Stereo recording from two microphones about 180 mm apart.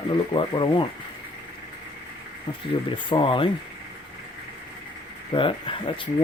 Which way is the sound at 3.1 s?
30° left (ahead or behind).